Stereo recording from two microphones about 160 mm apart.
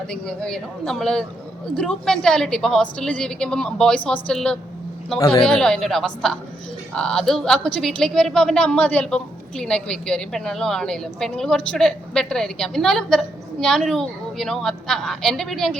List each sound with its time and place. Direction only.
0.1 s speech: 5° left (ahead or behind)
5.2 s a woman's voice: 35° left (ahead or behind)
5.5 s speech: 5° left (ahead or behind)